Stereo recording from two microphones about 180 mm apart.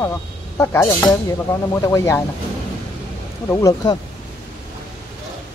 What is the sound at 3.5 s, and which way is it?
Speech, 20° left (ahead or behind).